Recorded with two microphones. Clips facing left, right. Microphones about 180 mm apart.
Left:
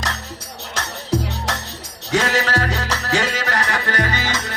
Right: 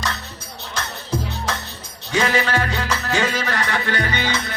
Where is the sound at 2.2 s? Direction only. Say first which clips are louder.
Even; 40° left (ahead or behind).